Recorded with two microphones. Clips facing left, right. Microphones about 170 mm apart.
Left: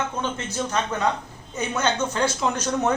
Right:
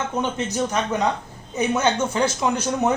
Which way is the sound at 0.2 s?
15° right (ahead or behind).